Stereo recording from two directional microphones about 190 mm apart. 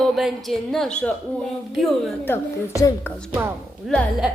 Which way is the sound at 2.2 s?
10° left (ahead or behind).